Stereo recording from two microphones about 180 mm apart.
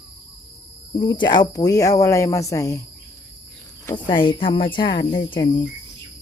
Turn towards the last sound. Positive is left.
turn(degrees=25)  # may be behind; listen again after turning